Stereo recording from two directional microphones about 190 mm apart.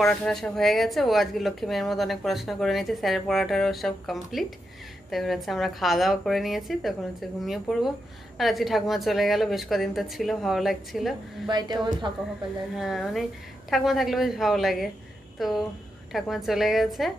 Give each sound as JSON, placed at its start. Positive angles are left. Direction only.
{"t": 0.0, "sound": "speech", "side_deg": 0}
{"t": 11.4, "sound": "a woman's voice", "side_deg": -20}
{"t": 12.7, "sound": "speech", "side_deg": 0}